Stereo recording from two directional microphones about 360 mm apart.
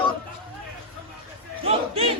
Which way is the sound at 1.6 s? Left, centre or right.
Centre.